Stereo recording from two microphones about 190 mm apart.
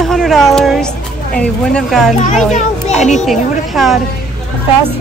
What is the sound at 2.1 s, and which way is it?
A child's voice, 40° left (ahead or behind).